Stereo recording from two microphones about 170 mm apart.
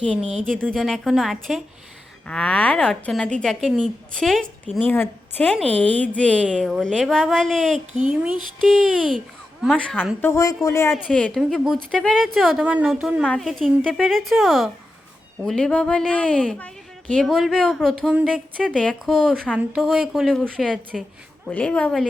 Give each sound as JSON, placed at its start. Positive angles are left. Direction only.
{"t": 0.1, "sound": "speech", "side_deg": -5}
{"t": 8.1, "sound": "music", "side_deg": -5}
{"t": 9.0, "sound": "a child's voice", "side_deg": 0}
{"t": 10.9, "sound": "speech", "side_deg": 0}
{"t": 18.6, "sound": "speech", "side_deg": 5}